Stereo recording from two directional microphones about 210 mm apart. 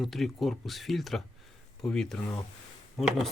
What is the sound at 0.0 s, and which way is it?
Speech, centre (ahead or behind).